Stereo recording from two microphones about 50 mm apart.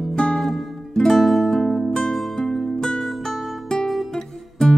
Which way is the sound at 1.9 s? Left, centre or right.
Centre.